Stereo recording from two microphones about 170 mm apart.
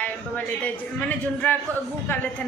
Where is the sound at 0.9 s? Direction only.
10° left (ahead or behind).